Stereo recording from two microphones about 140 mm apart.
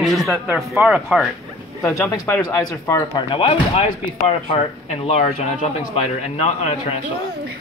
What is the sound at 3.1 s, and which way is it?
A man's voice, 35° left (ahead or behind).